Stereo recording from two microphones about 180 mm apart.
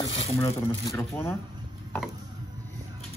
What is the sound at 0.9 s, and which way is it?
Speech, 15° left (ahead or behind).